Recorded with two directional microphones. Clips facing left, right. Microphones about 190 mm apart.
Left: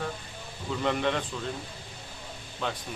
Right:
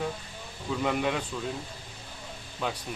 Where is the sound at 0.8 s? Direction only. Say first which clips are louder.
Left 1 dB; 5° right (ahead or behind).